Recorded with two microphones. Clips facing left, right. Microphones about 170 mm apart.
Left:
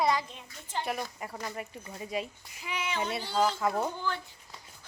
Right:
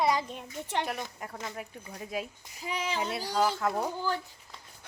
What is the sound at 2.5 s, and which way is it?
Speech, 35° right (ahead or behind).